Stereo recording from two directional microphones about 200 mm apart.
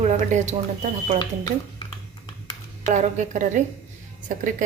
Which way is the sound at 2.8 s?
35° right (ahead or behind).